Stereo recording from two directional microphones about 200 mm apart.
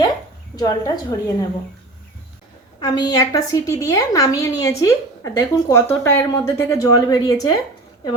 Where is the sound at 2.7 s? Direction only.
20° left (ahead or behind).